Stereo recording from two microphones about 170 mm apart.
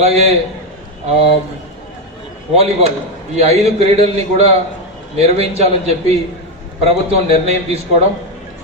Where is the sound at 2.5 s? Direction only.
40° right (ahead or behind).